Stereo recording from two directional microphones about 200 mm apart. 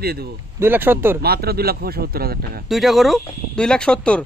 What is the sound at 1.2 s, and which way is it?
Speech, 50° right (ahead or behind).